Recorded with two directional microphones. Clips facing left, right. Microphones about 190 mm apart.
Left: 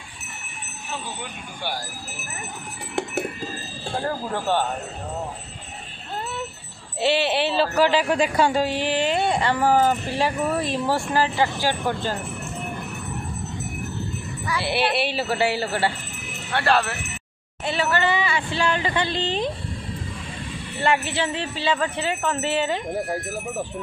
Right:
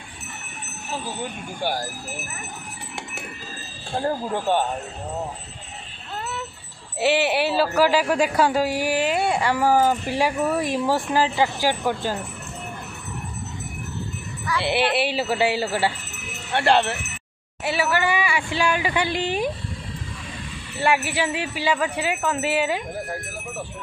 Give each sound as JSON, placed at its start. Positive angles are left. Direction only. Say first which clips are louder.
{"t": 1.6, "sound": "speech", "louder": "right 5 dB", "side_deg": -45}
{"t": 4.3, "sound": "speech", "louder": "even", "side_deg": -20}
{"t": 7.0, "sound": "speech", "louder": "right 1 dB", "side_deg": -15}
{"t": 14.6, "sound": "speech", "louder": "right 2 dB", "side_deg": -15}
{"t": 16.5, "sound": "speech", "louder": "right 2 dB", "side_deg": -25}
{"t": 17.6, "sound": "speech", "louder": "even", "side_deg": -10}
{"t": 20.8, "sound": "speech", "louder": "right 1 dB", "side_deg": -10}